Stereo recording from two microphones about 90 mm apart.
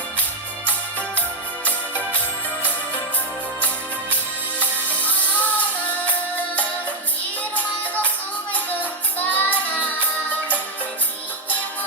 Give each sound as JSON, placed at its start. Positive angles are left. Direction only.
{"t": 4.9, "sound": "music", "side_deg": 15}
{"t": 8.5, "sound": "music", "side_deg": 20}